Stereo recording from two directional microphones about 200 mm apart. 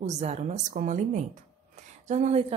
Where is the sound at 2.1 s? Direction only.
35° right (ahead or behind).